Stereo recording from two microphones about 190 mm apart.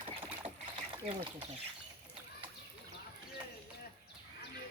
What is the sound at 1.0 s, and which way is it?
Speech, 25° right (ahead or behind).